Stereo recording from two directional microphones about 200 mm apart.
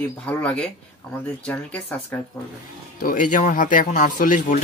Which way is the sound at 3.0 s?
40° left (ahead or behind).